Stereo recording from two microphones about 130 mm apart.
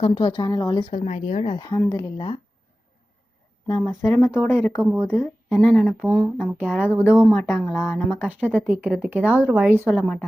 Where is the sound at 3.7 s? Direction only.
20° left (ahead or behind).